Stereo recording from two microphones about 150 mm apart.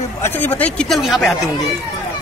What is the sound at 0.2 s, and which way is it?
Speech, 15° left (ahead or behind).